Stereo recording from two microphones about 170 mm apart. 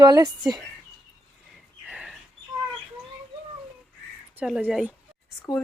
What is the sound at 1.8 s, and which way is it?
Bird, 5° right (ahead or behind).